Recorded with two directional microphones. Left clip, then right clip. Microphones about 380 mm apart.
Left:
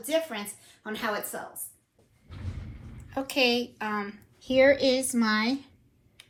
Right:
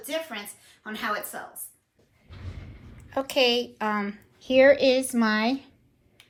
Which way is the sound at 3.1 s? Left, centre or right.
Centre.